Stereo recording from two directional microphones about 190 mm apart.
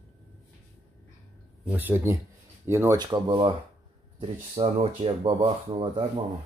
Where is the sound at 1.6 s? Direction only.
10° right (ahead or behind); by 6.0 s 25° right (ahead or behind).